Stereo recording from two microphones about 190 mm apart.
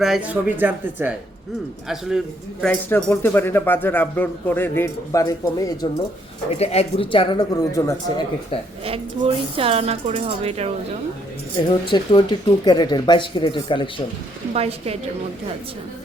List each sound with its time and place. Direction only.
0.0 s a man's voice: 5° right (ahead or behind)
2.9 s speech: 10° left (ahead or behind)
6.6 s speech: 35° left (ahead or behind); by 8.1 s 15° left (ahead or behind)
8.8 s speech: 30° right (ahead or behind)
11.7 s speech: 25° left (ahead or behind)
14.5 s speech: 30° right (ahead or behind)